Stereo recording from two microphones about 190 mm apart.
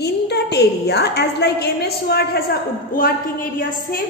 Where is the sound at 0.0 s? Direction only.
60° left (ahead or behind).